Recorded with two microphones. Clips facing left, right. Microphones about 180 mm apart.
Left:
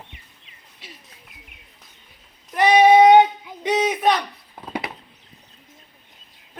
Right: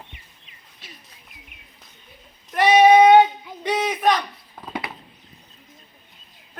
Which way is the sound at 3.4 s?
15° left (ahead or behind).